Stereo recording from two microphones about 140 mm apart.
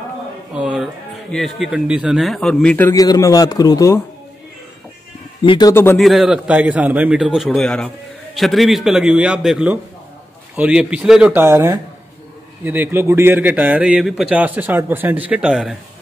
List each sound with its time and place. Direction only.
0.6 s music: 5° right (ahead or behind)
1.3 s a man's voice: centre (ahead or behind)
2.9 s a man's voice: 25° left (ahead or behind)
5.4 s speech: 35° left (ahead or behind)
5.7 s speech: 15° left (ahead or behind)
5.9 s a man's voice: centre (ahead or behind)
11.4 s a man's voice: 20° right (ahead or behind)